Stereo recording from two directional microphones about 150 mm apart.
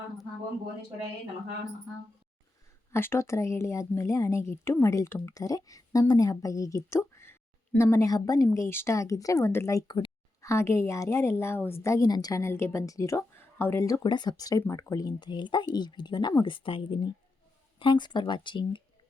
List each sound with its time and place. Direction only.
2.9 s a woman's voice: 15° left (ahead or behind); by 18.8 s 30° left (ahead or behind)